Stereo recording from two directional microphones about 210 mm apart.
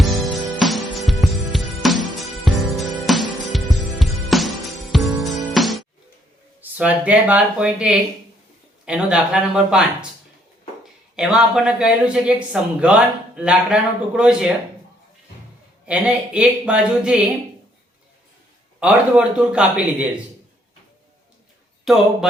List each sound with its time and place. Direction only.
0.0 s music: centre (ahead or behind)
6.6 s speech: 5° right (ahead or behind)
11.2 s speech: 5° right (ahead or behind)
15.9 s speech: 5° right (ahead or behind)
18.8 s speech: 5° right (ahead or behind)
21.8 s speech: centre (ahead or behind)